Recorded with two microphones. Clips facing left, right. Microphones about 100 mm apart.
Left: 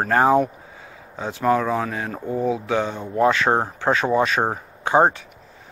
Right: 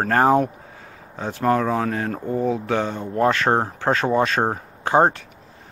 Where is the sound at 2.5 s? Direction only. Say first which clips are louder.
Even; 40° right (ahead or behind).